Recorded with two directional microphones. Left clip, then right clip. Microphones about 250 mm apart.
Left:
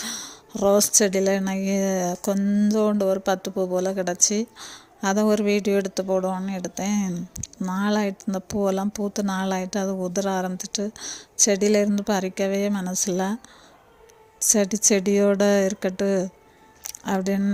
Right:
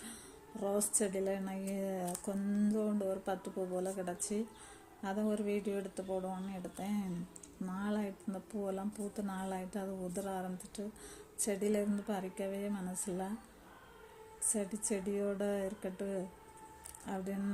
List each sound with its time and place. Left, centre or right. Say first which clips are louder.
0.0 s speech: left 19 dB; left
14.5 s speech: left 18 dB; left